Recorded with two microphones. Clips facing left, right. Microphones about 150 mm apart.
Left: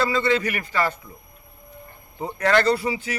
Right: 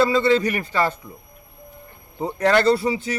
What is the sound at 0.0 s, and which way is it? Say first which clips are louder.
Speech: right 4 dB; 30° right (ahead or behind).